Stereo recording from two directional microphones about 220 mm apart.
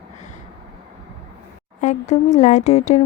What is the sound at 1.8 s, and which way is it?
Speech, 30° left (ahead or behind).